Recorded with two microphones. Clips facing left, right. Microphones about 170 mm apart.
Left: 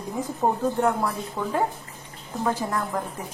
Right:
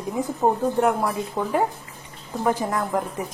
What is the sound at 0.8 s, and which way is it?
A woman's voice, 10° right (ahead or behind).